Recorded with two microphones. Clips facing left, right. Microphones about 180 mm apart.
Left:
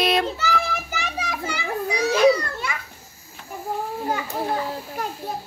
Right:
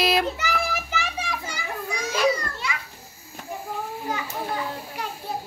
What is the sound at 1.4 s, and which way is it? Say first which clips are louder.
Children playing: left 6 dB; 65° left (ahead or behind).